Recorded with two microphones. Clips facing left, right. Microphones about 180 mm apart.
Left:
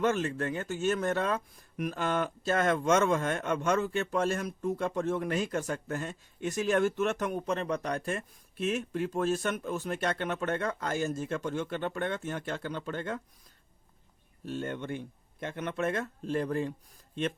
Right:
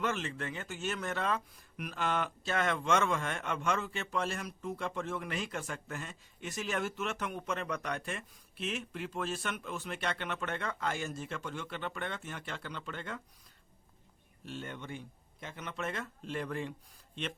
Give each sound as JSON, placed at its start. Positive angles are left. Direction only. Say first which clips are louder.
{"t": 0.0, "sound": "speech", "louder": "left 7 dB", "side_deg": 45}
{"t": 14.4, "sound": "speech", "louder": "left 8 dB", "side_deg": 45}